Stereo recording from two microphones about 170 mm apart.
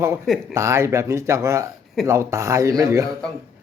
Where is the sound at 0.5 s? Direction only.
15° right (ahead or behind).